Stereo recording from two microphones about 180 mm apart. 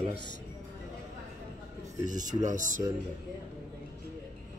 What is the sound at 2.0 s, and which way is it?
Speech, 45° right (ahead or behind).